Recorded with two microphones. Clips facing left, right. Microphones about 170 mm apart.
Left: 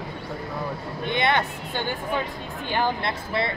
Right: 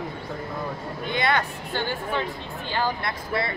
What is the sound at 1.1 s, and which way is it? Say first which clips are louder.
Speech: left 1 dB; 20° left (ahead or behind).